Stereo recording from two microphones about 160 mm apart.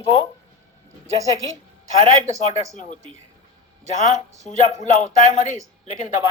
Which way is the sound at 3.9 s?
50° left (ahead or behind).